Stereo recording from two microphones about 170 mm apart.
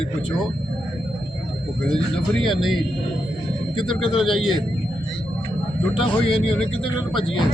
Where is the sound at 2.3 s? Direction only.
Centre (ahead or behind).